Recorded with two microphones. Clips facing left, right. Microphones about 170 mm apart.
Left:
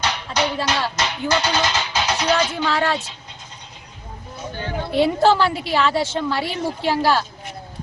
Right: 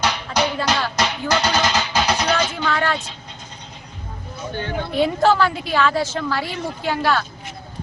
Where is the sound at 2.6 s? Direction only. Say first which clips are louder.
Even; 30° left (ahead or behind).